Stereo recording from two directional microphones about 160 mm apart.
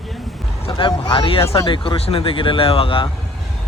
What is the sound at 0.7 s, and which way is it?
Speech, 30° left (ahead or behind).